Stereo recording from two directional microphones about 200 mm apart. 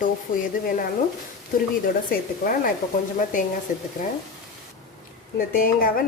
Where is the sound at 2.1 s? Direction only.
45° left (ahead or behind).